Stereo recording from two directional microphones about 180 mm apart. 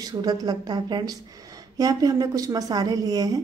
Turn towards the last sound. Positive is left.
turn(degrees=-20)  # may be behind; listen again after turning